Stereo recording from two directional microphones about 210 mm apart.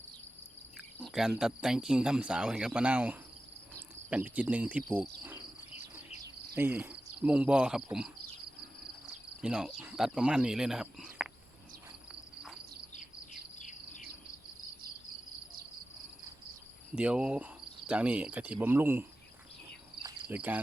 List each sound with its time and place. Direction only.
0.9 s speech: centre (ahead or behind)
6.6 s cricket: 10° right (ahead or behind)
9.4 s speech: 5° right (ahead or behind)
13.6 s bird: 35° left (ahead or behind)
16.9 s cricket: 5° right (ahead or behind)
20.0 s cricket: 20° right (ahead or behind)
20.3 s cricket: 10° right (ahead or behind)